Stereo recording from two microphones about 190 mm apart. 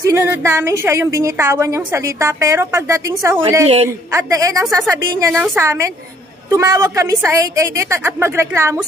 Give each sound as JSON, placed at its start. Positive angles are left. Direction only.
{"t": 0.0, "sound": "a woman's voice", "side_deg": -15}
{"t": 3.6, "sound": "a woman's voice", "side_deg": -35}
{"t": 4.1, "sound": "a woman's voice", "side_deg": -15}